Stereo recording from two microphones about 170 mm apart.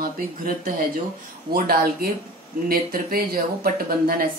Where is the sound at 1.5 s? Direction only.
60° right (ahead or behind).